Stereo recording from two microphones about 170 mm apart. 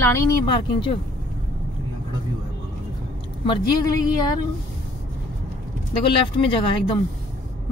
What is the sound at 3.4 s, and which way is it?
Speech, 25° left (ahead or behind).